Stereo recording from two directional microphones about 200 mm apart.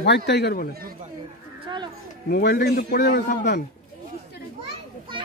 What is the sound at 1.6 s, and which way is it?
Children playing, 20° right (ahead or behind).